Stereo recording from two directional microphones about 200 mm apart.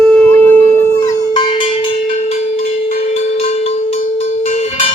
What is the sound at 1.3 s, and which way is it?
Cowbell, 25° left (ahead or behind).